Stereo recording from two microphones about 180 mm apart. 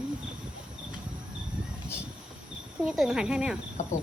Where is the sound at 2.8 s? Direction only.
5° right (ahead or behind).